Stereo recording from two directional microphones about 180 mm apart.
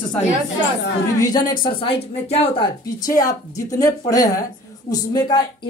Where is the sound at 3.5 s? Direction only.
20° left (ahead or behind).